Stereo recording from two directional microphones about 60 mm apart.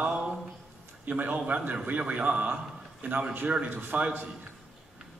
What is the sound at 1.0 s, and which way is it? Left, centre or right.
A man's voice, right.